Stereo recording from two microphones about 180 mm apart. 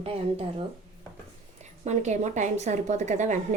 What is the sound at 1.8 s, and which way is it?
A woman's voice, 40° right (ahead or behind).